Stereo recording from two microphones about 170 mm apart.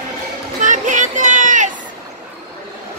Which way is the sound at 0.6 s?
50° right (ahead or behind).